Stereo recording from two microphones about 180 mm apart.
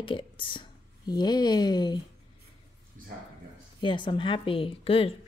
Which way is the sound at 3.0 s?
50° right (ahead or behind).